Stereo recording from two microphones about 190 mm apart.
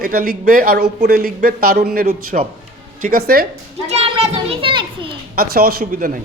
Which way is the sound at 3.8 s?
35° right (ahead or behind).